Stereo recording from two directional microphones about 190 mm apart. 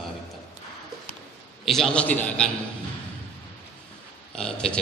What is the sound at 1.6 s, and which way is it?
Speech, centre (ahead or behind).